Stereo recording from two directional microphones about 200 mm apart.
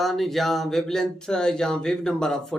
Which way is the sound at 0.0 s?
Centre (ahead or behind).